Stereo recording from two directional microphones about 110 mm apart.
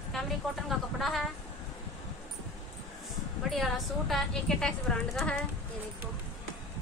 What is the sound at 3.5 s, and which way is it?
A woman's voice, centre (ahead or behind).